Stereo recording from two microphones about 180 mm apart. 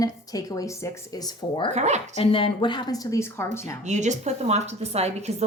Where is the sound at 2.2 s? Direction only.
30° left (ahead or behind).